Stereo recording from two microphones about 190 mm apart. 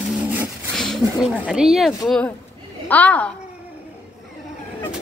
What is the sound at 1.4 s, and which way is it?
A child's voice, 5° right (ahead or behind).